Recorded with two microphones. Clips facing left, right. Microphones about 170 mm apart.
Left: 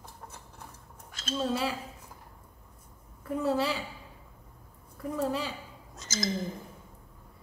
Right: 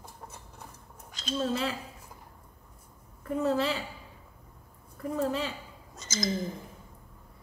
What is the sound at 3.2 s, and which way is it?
Speech, 10° left (ahead or behind).